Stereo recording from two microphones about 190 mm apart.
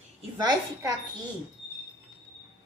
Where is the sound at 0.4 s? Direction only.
20° right (ahead or behind).